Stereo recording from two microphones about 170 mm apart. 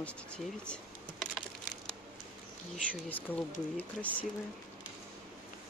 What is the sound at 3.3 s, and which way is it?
Speech, 10° left (ahead or behind).